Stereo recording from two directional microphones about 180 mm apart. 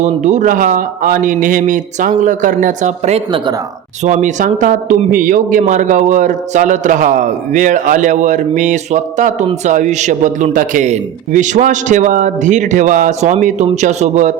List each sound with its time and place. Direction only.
0.0 s a man's voice: 40° right (ahead or behind)